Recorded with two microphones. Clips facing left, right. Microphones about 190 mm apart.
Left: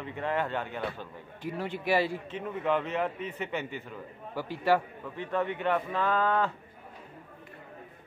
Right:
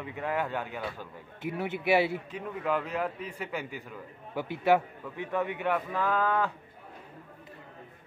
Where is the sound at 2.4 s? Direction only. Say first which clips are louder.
Left 2 dB; centre (ahead or behind).